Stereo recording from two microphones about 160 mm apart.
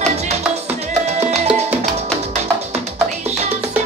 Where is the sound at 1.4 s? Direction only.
5° right (ahead or behind).